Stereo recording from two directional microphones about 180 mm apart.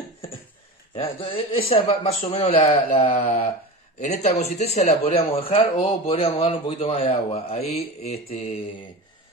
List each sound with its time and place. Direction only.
0.9 s a man's voice: 30° left (ahead or behind)